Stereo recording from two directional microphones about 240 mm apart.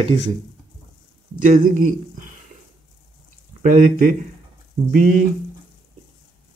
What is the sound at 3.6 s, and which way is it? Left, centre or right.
A man's voice, right.